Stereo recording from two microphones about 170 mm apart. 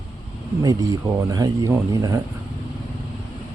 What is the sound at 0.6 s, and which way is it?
Speech, 20° right (ahead or behind).